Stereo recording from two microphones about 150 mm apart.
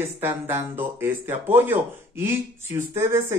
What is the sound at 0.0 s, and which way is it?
A man's voice, 15° right (ahead or behind).